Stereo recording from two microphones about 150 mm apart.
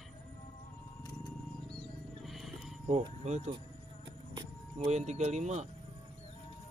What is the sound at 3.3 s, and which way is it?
Speech, 55° right (ahead or behind).